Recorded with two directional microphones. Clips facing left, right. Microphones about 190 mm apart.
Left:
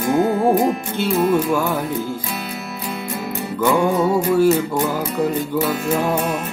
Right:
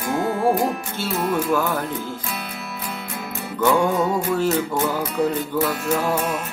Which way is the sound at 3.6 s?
10° left (ahead or behind).